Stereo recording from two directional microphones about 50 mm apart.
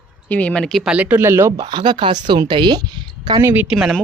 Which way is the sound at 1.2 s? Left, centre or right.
Right.